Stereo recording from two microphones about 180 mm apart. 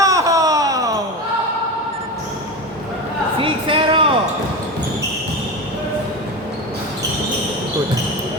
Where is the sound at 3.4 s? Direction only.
30° right (ahead or behind).